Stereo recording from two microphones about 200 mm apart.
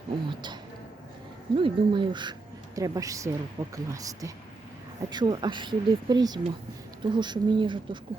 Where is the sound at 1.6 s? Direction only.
25° right (ahead or behind).